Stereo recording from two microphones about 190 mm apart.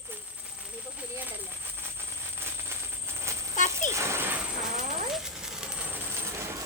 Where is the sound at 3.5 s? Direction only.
40° left (ahead or behind).